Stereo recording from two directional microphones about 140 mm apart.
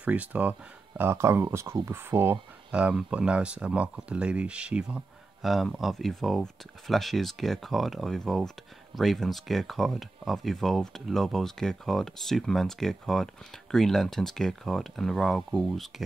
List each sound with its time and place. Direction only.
0.0 s speech: 10° right (ahead or behind)